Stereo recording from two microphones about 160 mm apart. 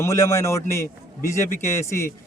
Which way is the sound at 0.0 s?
15° left (ahead or behind).